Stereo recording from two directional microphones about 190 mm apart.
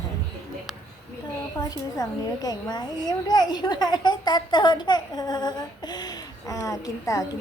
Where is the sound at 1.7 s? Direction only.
20° left (ahead or behind).